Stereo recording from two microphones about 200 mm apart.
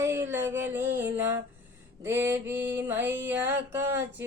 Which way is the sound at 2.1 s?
10° right (ahead or behind).